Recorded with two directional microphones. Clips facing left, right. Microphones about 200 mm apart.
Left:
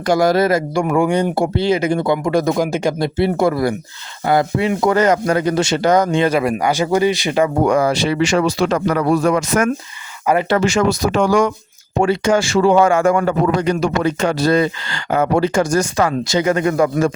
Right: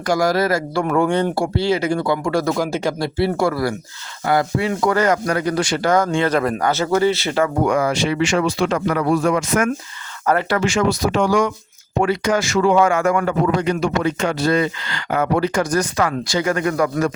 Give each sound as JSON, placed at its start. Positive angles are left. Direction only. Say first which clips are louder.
{"t": 0.0, "sound": "speech", "louder": "left 4 dB", "side_deg": 25}
{"t": 7.6, "sound": "speech", "louder": "left 3 dB", "side_deg": 35}
{"t": 10.3, "sound": "speech", "louder": "left 2 dB", "side_deg": 10}
{"t": 10.6, "sound": "speech", "louder": "left 2 dB", "side_deg": 40}
{"t": 11.9, "sound": "speech", "louder": "left 3 dB", "side_deg": 30}